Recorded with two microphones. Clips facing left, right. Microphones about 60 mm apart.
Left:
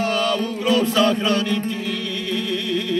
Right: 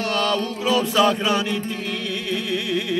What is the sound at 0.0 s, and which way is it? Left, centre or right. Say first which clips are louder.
Mantra: left 1 dB; centre.